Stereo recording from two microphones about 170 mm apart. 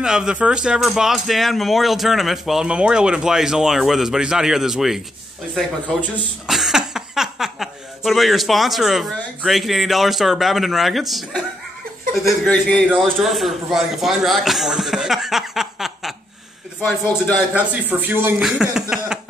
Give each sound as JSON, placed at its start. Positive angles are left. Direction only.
{"t": 0.0, "sound": "a man's voice", "side_deg": -5}
{"t": 17.6, "sound": "speech", "side_deg": -10}